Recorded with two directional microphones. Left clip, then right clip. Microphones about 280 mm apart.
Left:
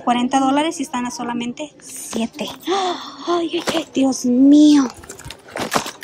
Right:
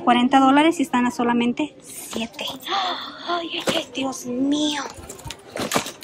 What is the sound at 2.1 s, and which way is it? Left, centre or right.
Speech, centre.